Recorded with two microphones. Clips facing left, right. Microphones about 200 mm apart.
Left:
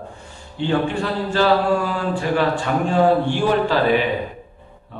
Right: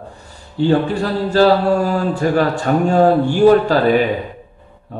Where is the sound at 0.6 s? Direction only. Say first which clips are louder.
Right 5 dB; 40° right (ahead or behind).